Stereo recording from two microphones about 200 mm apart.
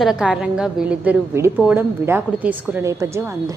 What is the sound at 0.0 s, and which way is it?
A woman's voice, 5° right (ahead or behind).